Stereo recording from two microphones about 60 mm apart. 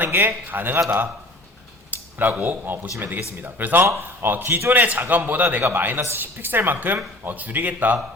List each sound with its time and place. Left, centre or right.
0.0 s speech: right
1.9 s a sound: right
2.4 s speech: right
3.8 s speech: right
4.3 s a man's voice: right